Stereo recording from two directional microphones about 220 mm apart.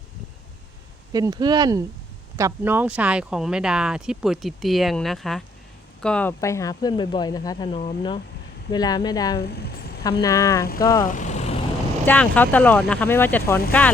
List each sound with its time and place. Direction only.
1.1 s speech: 15° right (ahead or behind); by 9.4 s 15° left (ahead or behind)
9.4 s vehicle: 45° left (ahead or behind)
10.0 s speech: 15° left (ahead or behind)
11.1 s vehicle: 35° left (ahead or behind)
12.0 s speech: 5° left (ahead or behind)